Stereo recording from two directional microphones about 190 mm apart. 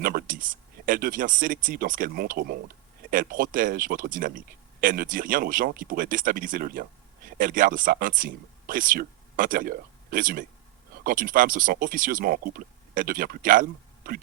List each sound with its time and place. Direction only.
0.0 s speech: 50° right (ahead or behind)